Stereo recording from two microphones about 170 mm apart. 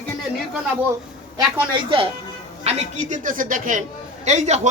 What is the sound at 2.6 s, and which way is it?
A man's voice, 45° right (ahead or behind).